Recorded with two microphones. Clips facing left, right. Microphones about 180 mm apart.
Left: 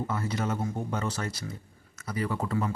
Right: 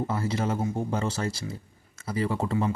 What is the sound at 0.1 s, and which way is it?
A man's voice, 30° right (ahead or behind).